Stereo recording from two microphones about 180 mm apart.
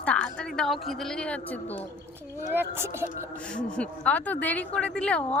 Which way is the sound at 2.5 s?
10° right (ahead or behind).